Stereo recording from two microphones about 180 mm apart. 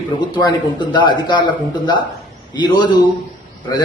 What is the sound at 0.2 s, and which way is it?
Speech, 25° left (ahead or behind).